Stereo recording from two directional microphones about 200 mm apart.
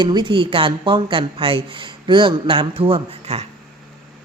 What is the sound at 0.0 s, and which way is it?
Speech, 20° right (ahead or behind).